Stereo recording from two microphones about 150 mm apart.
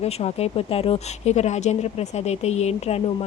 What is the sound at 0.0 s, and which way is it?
Speech, 45° left (ahead or behind).